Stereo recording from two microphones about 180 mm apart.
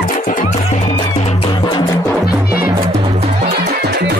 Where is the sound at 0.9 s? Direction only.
30° left (ahead or behind).